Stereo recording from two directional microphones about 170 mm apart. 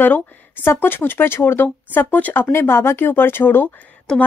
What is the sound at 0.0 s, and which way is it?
A woman's voice, 10° left (ahead or behind).